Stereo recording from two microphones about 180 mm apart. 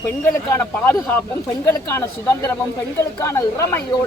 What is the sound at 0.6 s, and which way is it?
A man's voice, 10° left (ahead or behind).